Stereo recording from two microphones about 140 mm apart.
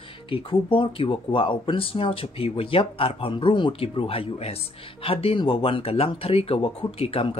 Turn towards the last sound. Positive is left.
turn(degrees=40)  # may be behind; listen again after turning